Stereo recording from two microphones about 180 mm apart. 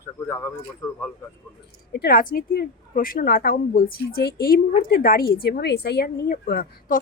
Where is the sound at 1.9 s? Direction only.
55° left (ahead or behind).